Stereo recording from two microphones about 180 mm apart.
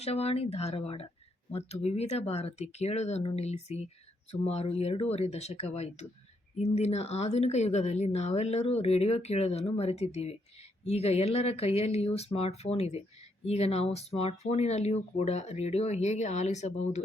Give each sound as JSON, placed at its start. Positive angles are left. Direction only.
{"t": 0.0, "sound": "speech", "side_deg": 35}